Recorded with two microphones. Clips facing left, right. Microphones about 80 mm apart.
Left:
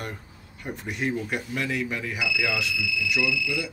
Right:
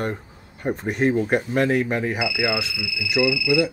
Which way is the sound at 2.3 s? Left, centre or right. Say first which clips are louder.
Right 3 dB; right.